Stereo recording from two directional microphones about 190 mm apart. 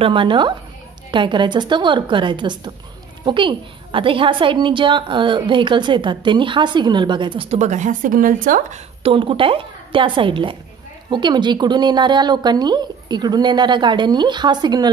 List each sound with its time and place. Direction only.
0.0 s a woman's voice: 25° right (ahead or behind)